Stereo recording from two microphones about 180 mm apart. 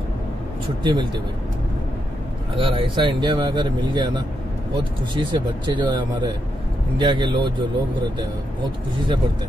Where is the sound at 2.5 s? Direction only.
30° right (ahead or behind).